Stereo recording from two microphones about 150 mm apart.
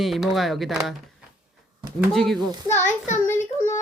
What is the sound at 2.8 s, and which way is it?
Speech, 55° left (ahead or behind).